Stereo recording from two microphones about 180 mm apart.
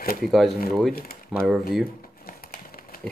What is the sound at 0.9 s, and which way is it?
Speech, 55° left (ahead or behind).